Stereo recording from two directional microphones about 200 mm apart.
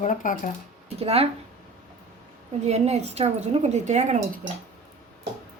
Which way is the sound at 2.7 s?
35° right (ahead or behind).